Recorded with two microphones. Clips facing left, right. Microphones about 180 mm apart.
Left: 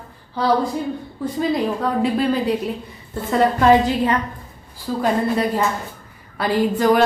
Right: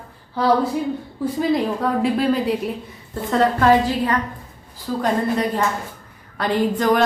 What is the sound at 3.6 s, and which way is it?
Speech, 20° left (ahead or behind).